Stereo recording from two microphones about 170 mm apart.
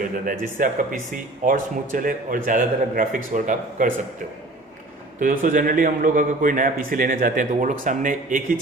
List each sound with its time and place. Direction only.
0.3 s speech: 50° right (ahead or behind)
5.2 s speech: 50° right (ahead or behind)